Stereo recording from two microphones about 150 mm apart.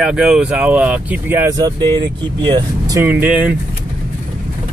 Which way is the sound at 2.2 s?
30° right (ahead or behind).